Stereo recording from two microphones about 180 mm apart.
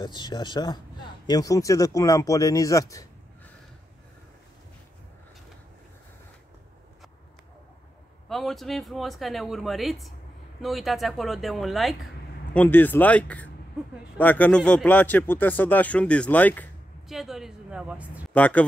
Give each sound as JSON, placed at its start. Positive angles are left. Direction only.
{"t": 0.0, "sound": "speech", "side_deg": 25}
{"t": 8.3, "sound": "speech", "side_deg": 0}
{"t": 18.3, "sound": "speech", "side_deg": 10}